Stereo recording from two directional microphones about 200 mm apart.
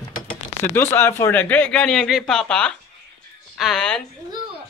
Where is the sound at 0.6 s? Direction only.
10° left (ahead or behind).